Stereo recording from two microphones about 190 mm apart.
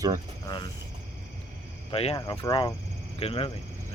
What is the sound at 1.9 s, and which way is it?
Speech, 30° left (ahead or behind).